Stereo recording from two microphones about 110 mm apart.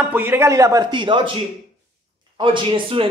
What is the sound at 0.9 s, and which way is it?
Speech, 45° right (ahead or behind).